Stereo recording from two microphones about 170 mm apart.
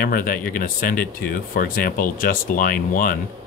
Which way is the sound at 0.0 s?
55° left (ahead or behind).